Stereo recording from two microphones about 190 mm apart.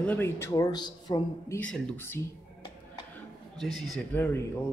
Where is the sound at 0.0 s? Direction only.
10° left (ahead or behind).